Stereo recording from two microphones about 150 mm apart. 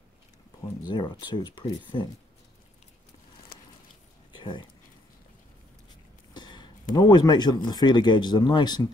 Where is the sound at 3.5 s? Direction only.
80° left.